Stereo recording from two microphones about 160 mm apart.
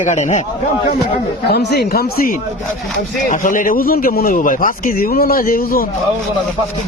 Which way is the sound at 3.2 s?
55° left (ahead or behind).